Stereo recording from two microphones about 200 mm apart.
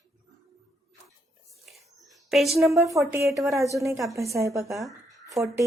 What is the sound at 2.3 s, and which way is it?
Speech, centre (ahead or behind).